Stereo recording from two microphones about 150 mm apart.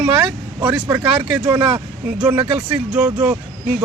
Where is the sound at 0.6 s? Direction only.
10° right (ahead or behind).